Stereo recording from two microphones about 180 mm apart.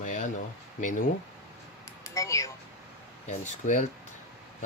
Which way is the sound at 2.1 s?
15° left (ahead or behind).